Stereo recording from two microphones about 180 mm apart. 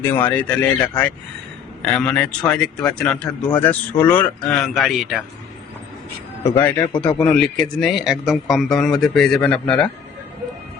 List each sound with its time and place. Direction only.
0.0 s speech: 10° left (ahead or behind)
6.6 s speech: 10° left (ahead or behind)
6.9 s a man's voice: 25° left (ahead or behind)
7.2 s speech: 5° left (ahead or behind)